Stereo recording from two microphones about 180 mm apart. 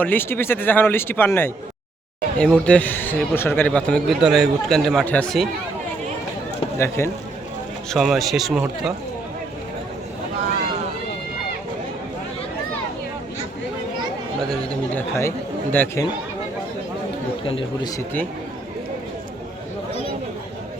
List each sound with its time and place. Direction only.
0.0 s a man's voice: 10° left (ahead or behind)
6.7 s a man's voice: 15° left (ahead or behind)
7.9 s speech: centre (ahead or behind)
14.5 s a man's voice: 10° left (ahead or behind)
17.4 s a man's voice: 30° left (ahead or behind)